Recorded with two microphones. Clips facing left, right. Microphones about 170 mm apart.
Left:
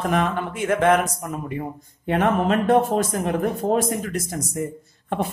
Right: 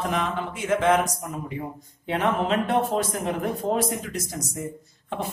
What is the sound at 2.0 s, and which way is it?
Speech, 50° left (ahead or behind).